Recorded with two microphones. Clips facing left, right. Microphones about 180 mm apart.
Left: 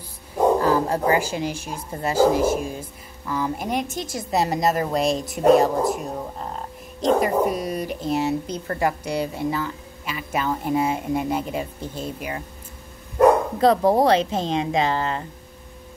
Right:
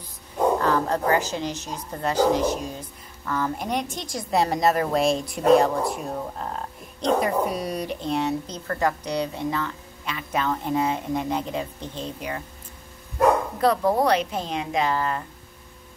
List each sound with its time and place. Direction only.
0.6 s speech: 10° left (ahead or behind)
13.6 s a woman's voice: 25° left (ahead or behind)